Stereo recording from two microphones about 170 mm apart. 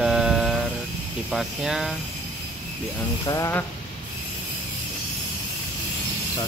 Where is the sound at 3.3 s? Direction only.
15° left (ahead or behind).